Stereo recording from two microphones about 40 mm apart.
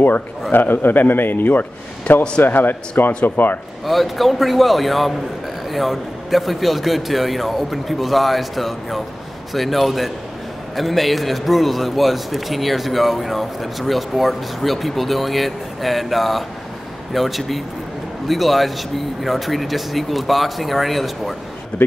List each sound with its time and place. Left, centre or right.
0.5 s a man's voice: left
3.8 s a man's voice: centre